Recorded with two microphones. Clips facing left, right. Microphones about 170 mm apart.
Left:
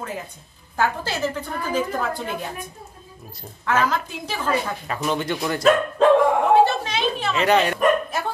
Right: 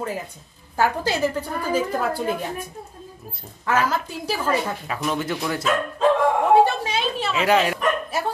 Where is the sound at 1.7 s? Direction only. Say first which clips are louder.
Right 2 dB; 10° right (ahead or behind).